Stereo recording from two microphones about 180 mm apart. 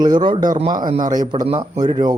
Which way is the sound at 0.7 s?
25° right (ahead or behind).